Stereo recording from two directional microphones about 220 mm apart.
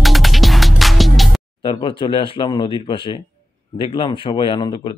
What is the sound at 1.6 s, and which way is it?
Speech, 25° left (ahead or behind).